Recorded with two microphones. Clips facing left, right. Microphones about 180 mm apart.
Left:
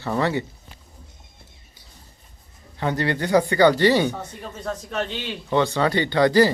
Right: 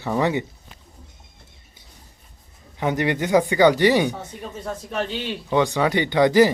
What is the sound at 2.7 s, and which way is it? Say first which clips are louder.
Speech: right 2 dB; 15° right (ahead or behind).